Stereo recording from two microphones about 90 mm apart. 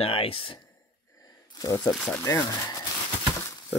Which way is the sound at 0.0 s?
90° left.